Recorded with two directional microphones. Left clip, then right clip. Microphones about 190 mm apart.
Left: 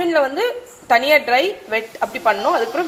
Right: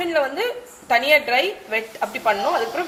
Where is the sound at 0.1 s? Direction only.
30° left (ahead or behind).